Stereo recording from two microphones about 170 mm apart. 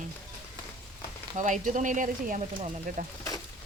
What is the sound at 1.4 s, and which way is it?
Speech, 45° right (ahead or behind).